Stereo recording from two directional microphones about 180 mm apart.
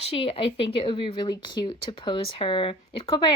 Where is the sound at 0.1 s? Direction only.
30° left (ahead or behind).